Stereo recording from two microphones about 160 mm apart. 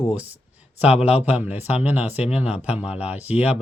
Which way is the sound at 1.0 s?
10° right (ahead or behind).